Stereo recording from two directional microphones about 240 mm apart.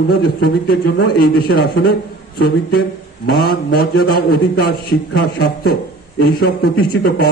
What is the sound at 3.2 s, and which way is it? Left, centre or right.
A man's voice, left.